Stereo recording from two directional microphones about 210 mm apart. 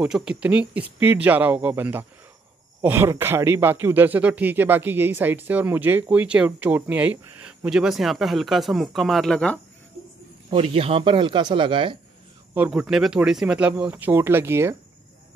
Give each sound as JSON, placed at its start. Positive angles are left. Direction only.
{"t": 0.0, "sound": "a man's voice", "side_deg": -5}
{"t": 10.5, "sound": "speech", "side_deg": -30}
{"t": 12.5, "sound": "a man's voice", "side_deg": -5}